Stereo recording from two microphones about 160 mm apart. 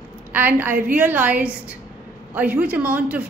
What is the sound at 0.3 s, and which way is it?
A woman's voice, 10° right (ahead or behind).